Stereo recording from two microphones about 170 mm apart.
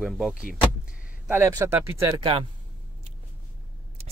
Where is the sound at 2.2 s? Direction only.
35° right (ahead or behind).